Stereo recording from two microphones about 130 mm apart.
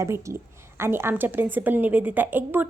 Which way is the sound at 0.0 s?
20° right (ahead or behind).